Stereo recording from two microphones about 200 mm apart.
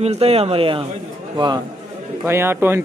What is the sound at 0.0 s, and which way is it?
Speech, 30° right (ahead or behind).